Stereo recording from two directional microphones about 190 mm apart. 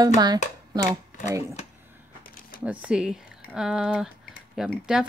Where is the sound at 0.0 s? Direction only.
20° right (ahead or behind).